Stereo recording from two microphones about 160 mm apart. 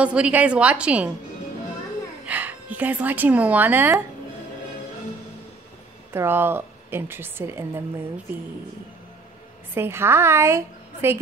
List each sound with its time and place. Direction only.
0.0 s speech: 5° right (ahead or behind)
2.2 s speech: 10° right (ahead or behind)
6.1 s speech: 15° right (ahead or behind)
9.8 s speech: 15° right (ahead or behind)